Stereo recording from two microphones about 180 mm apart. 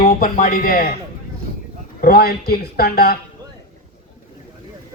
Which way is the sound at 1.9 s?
60° left (ahead or behind).